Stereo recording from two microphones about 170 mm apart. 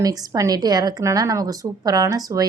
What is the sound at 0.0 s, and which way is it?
A woman's voice, 20° right (ahead or behind).